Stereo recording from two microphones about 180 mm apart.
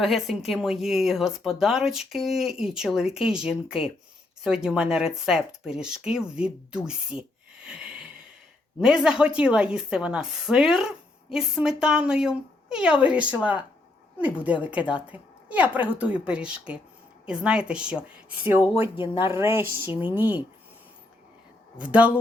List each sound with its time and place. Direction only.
0.0 s a woman's voice: centre (ahead or behind)
18.9 s speech: 30° left (ahead or behind)
19.3 s a woman's voice: 15° right (ahead or behind)
21.8 s a woman's voice: 5° right (ahead or behind)